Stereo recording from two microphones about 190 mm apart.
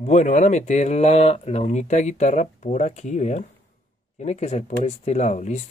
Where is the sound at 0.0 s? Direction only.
40° left (ahead or behind).